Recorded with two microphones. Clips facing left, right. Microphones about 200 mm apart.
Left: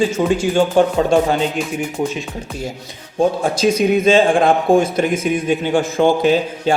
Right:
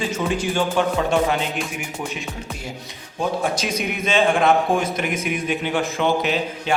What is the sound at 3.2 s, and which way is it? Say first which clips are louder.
A man's voice: left 7 dB; 30° left (ahead or behind).